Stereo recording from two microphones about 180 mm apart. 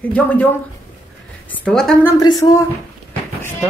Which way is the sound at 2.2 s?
20° left (ahead or behind).